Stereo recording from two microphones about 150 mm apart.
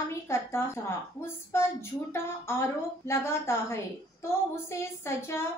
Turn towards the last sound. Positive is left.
turn(degrees=15)  # may be behind; listen again after turning